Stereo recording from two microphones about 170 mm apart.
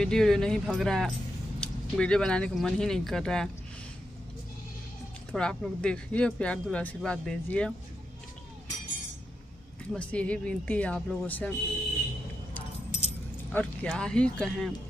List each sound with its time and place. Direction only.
0.0 s speech: 5° left (ahead or behind)
5.3 s speech: 5° left (ahead or behind)
9.9 s speech: 5° left (ahead or behind)
12.5 s keys jangling: 40° left (ahead or behind)
13.5 s speech: 10° left (ahead or behind)